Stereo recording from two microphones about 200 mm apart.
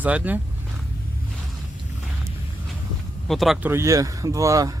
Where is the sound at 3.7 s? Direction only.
15° right (ahead or behind).